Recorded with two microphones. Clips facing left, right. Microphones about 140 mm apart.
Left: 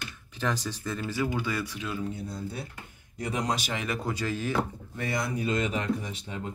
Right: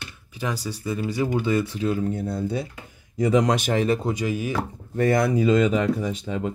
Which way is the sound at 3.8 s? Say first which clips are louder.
Right 9 dB; 30° right (ahead or behind).